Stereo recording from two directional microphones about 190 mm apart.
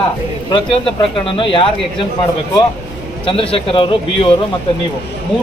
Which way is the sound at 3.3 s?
30° left (ahead or behind).